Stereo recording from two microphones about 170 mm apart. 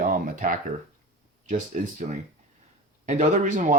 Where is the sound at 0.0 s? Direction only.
55° right (ahead or behind).